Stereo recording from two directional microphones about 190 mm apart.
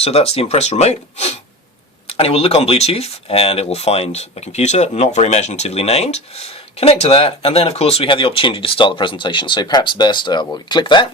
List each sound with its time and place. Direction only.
0.0 s speech: 30° left (ahead or behind)